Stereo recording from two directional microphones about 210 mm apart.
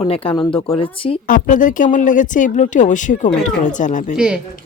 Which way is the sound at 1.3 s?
40° left (ahead or behind).